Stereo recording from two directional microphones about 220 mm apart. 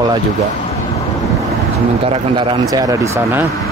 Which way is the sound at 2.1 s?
20° right (ahead or behind).